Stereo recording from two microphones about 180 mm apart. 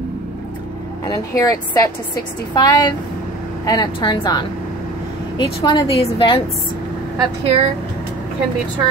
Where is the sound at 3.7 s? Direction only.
25° left (ahead or behind).